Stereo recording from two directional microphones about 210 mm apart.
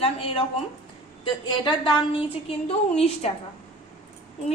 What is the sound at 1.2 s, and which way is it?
A woman's voice, 25° left (ahead or behind).